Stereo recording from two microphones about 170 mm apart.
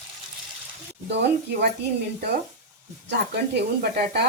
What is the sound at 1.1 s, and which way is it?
Speech, 90° right.